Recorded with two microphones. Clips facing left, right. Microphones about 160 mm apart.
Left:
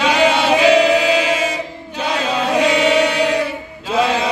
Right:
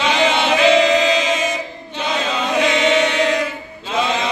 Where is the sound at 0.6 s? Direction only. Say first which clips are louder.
Even; 10° left (ahead or behind).